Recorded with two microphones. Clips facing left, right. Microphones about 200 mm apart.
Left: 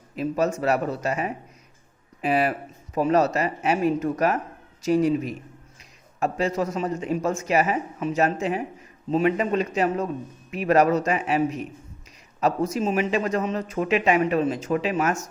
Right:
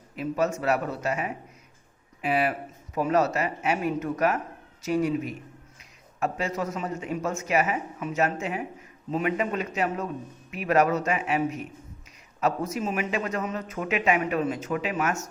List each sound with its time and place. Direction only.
0.2 s speech: 35° left (ahead or behind)